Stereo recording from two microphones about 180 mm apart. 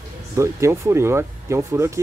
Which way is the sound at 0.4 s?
15° right (ahead or behind).